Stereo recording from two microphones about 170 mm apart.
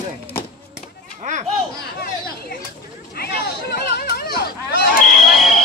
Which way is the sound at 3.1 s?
70° left (ahead or behind).